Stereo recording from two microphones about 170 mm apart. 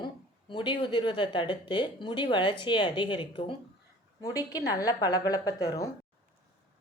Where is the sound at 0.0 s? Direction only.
30° left (ahead or behind).